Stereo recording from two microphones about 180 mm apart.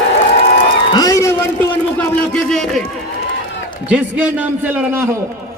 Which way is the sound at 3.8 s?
5° right (ahead or behind).